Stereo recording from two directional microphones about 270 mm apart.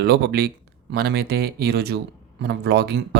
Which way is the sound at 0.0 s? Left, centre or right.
Right.